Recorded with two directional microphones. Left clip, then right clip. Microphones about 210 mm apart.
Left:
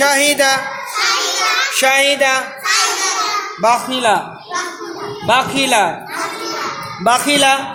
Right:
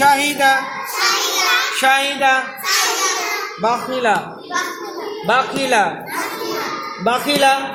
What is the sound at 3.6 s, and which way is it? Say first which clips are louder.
Speech: left 4 dB; 50° left (ahead or behind).